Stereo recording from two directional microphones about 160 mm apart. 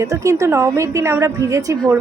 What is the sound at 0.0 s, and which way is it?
A woman's voice, 20° right (ahead or behind).